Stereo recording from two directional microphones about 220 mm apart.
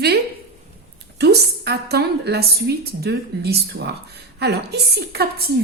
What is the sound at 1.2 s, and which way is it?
A woman's voice, 50° right (ahead or behind).